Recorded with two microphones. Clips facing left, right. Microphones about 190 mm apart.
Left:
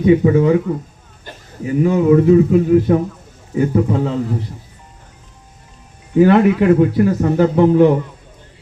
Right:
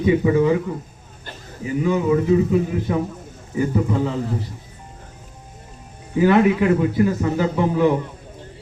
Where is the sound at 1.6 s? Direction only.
55° left (ahead or behind).